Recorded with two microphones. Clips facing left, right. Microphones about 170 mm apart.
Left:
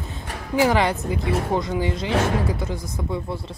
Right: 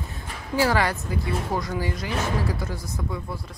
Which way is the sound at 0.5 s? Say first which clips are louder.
Left 3 dB; 20° left (ahead or behind).